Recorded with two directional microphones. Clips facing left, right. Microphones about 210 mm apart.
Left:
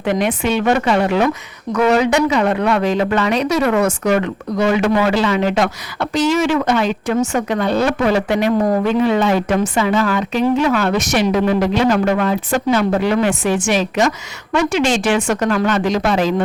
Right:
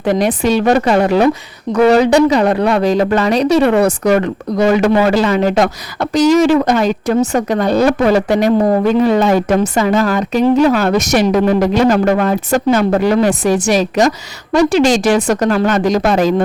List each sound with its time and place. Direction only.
0.0 s a woman's voice: 35° right (ahead or behind)